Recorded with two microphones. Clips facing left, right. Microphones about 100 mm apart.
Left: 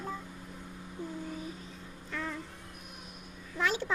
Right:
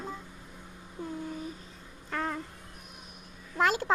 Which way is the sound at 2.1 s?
50° right (ahead or behind).